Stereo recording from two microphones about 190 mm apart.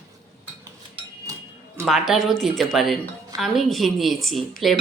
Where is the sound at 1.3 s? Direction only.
15° right (ahead or behind).